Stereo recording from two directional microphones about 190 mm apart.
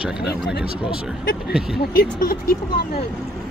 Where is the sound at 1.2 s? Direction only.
60° left (ahead or behind).